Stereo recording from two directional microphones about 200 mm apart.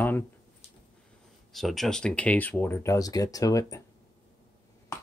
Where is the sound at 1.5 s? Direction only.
Centre (ahead or behind).